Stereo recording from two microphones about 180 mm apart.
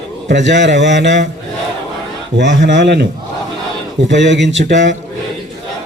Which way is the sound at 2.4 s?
75° right (ahead or behind).